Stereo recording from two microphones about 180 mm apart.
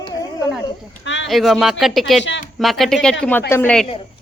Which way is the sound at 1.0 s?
90° left.